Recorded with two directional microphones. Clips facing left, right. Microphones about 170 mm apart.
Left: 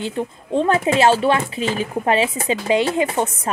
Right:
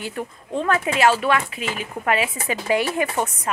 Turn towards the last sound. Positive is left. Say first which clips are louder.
# left 3 dB
turn(degrees=25)  # may be behind; listen again after turning